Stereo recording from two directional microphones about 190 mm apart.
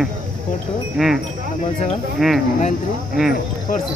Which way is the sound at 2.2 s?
Centre (ahead or behind).